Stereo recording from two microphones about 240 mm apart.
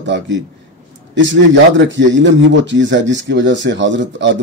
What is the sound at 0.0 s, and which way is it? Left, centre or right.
Speech, right.